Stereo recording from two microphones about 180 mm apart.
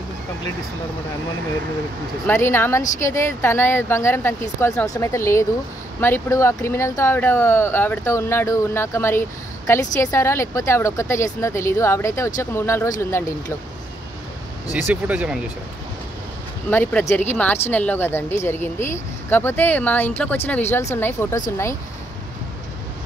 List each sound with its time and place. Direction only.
2.2 s speech: 15° left (ahead or behind)
14.7 s speech: 10° right (ahead or behind)
16.7 s speech: 10° left (ahead or behind)